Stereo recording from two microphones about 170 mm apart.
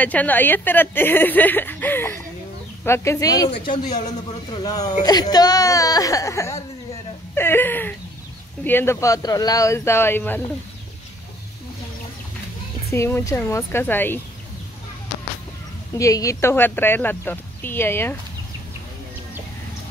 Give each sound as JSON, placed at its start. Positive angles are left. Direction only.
{"t": 0.0, "sound": "speech", "side_deg": 10}
{"t": 12.9, "sound": "speech", "side_deg": 15}
{"t": 16.0, "sound": "speech", "side_deg": 20}